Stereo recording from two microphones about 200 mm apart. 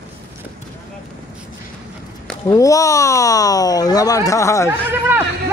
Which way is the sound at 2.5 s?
15° left (ahead or behind).